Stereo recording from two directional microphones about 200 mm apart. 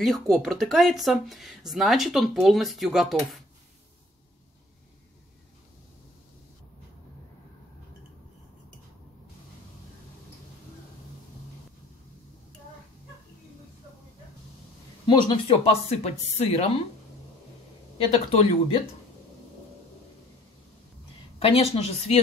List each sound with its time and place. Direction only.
0.0 s speech: centre (ahead or behind)
15.0 s speech: 25° left (ahead or behind)
17.9 s speech: 30° left (ahead or behind)
21.4 s speech: 30° left (ahead or behind)